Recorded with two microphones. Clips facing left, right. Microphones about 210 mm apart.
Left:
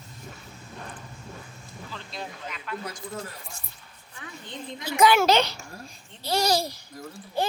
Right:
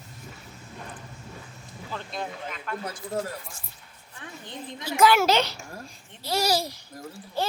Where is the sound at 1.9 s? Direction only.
50° right (ahead or behind).